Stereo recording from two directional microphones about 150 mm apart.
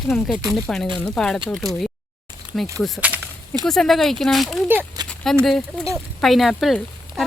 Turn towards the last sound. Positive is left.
turn(degrees=0)  # may be behind; listen again after turning